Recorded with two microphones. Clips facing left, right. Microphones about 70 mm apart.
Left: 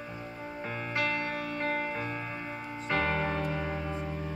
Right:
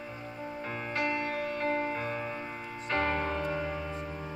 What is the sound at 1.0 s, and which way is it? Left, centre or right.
Music, right.